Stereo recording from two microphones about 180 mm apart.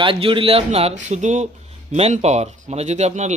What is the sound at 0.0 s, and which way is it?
A man's voice, 30° right (ahead or behind).